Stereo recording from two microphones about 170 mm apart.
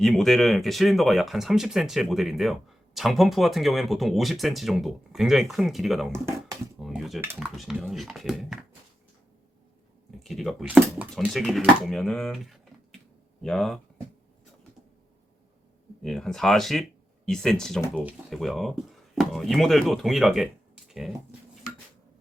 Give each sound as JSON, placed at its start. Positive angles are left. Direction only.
{"t": 0.0, "sound": "speech", "side_deg": 0}
{"t": 6.1, "sound": "speech", "side_deg": -15}
{"t": 6.8, "sound": "speech", "side_deg": 0}
{"t": 10.2, "sound": "speech", "side_deg": 0}
{"t": 16.0, "sound": "speech", "side_deg": 0}